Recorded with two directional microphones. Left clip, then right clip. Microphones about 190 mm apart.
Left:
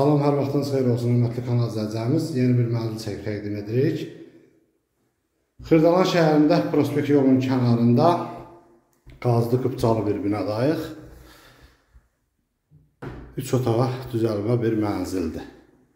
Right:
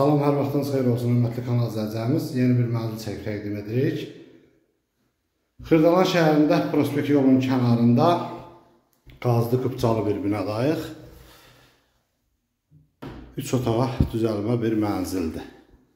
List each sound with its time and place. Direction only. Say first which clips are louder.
0.0 s a man's voice: even; centre (ahead or behind)
5.6 s a man's voice: even; centre (ahead or behind)
13.3 s a man's voice: left 1 dB; centre (ahead or behind)